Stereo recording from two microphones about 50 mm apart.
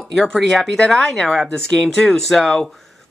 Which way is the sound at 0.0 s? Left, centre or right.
Centre.